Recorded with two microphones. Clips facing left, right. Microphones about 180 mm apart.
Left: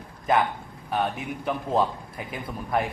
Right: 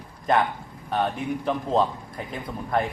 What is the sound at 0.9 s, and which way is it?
A man's voice, 5° left (ahead or behind).